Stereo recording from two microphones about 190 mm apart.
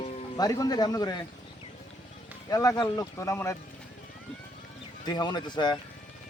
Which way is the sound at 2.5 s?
20° left (ahead or behind).